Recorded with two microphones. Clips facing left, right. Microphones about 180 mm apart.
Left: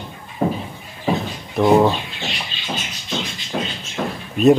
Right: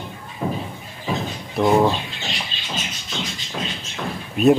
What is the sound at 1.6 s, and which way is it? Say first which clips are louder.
Speech: left 3 dB; centre (ahead or behind).